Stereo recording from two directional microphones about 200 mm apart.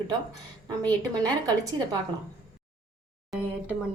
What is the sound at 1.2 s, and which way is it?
Speech, 20° right (ahead or behind).